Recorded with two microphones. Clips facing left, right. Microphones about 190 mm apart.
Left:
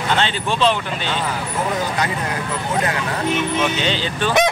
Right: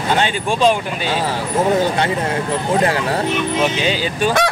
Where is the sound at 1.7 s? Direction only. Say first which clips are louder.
Right 6 dB; 30° right (ahead or behind).